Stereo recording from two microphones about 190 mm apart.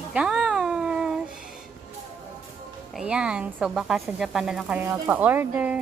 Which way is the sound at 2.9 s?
5° right (ahead or behind).